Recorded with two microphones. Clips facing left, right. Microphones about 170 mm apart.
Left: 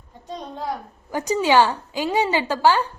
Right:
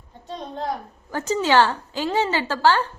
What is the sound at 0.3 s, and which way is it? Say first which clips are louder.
A woman's voice: right 1 dB; 10° left (ahead or behind).